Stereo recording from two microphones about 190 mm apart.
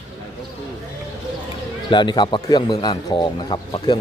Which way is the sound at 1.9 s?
25° left (ahead or behind).